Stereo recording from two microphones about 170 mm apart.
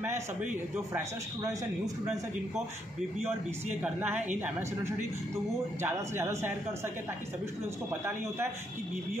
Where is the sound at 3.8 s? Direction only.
10° right (ahead or behind).